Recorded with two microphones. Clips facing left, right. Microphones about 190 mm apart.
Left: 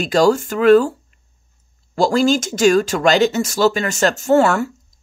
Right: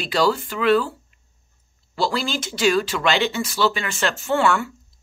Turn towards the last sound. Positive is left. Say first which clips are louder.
# left 3 dB
turn(degrees=40)  # may be behind; listen again after turning